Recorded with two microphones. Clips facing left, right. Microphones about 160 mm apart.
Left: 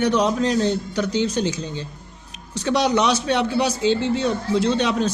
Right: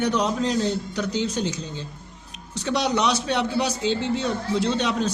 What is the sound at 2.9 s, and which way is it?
A man's voice, 75° left (ahead or behind).